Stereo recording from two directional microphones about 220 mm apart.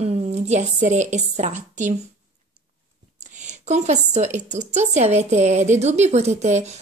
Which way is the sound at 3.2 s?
30° right (ahead or behind).